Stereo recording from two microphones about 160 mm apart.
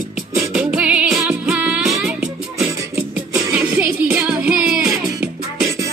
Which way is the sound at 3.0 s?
5° right (ahead or behind).